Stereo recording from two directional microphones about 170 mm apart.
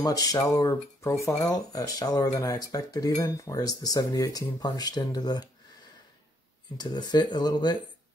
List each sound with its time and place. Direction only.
0.0 s speech: 20° left (ahead or behind)
6.8 s speech: 25° left (ahead or behind)